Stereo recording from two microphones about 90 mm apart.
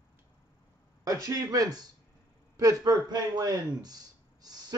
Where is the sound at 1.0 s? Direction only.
45° right (ahead or behind).